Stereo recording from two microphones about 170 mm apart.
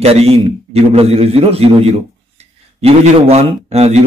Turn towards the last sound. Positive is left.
turn(degrees=-40)  # may be behind; listen again after turning